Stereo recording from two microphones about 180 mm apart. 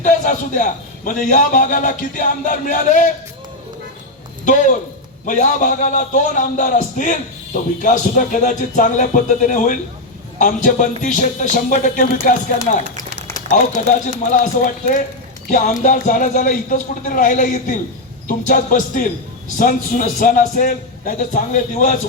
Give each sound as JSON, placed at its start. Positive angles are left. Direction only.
{"t": 0.0, "sound": "a man's voice", "side_deg": 45}
{"t": 4.4, "sound": "a man's voice", "side_deg": 45}
{"t": 14.3, "sound": "a man's voice", "side_deg": 45}